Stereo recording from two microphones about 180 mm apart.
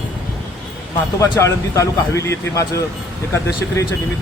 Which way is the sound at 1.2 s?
15° left (ahead or behind).